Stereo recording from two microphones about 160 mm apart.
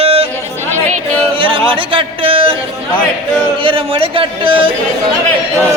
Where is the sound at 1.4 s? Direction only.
35° right (ahead or behind).